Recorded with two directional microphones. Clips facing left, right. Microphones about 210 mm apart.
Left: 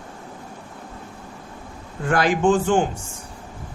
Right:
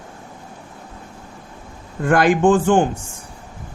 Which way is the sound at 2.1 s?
55° right (ahead or behind).